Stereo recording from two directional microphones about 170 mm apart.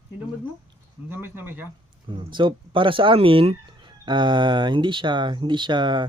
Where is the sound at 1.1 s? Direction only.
10° right (ahead or behind).